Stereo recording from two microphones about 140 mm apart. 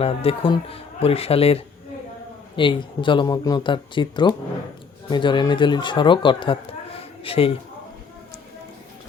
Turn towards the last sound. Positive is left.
turn(degrees=40)  # may be behind; listen again after turning